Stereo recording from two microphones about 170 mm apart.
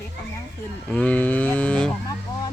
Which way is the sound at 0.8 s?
10° left (ahead or behind).